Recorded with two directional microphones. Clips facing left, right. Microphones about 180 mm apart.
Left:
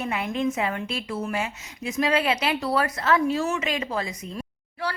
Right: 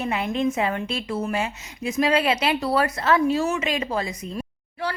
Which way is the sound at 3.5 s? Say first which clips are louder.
Right 2 dB; 20° right (ahead or behind).